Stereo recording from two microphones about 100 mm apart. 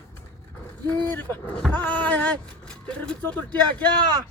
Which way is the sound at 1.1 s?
20° left (ahead or behind).